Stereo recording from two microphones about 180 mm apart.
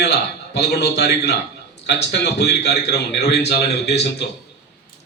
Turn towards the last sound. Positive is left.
turn(degrees=70)  # may be behind; listen again after turning